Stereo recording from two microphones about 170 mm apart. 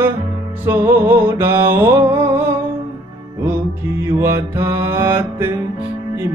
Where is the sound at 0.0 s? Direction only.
15° right (ahead or behind).